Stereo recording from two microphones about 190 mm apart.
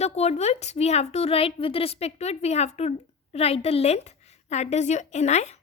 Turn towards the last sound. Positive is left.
turn(degrees=35)  # may be behind; listen again after turning